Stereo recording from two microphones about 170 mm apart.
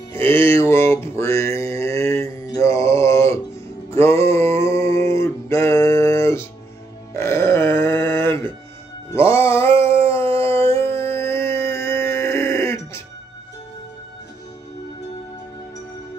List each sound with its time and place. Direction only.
0.1 s music: 15° left (ahead or behind)
3.9 s a sound: 15° left (ahead or behind)
7.2 s grunt: 15° left (ahead or behind)
9.1 s music: 15° left (ahead or behind)
9.7 s dog: 35° right (ahead or behind)
10.2 s howl: 35° right (ahead or behind)
11.0 s a sound: 15° left (ahead or behind)